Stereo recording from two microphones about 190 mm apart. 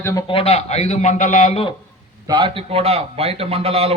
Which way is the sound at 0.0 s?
15° left (ahead or behind).